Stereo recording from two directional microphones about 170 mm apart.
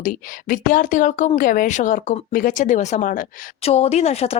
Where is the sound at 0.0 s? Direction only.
55° left (ahead or behind).